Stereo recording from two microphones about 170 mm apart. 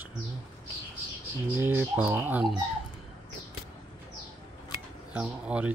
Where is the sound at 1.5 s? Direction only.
10° right (ahead or behind).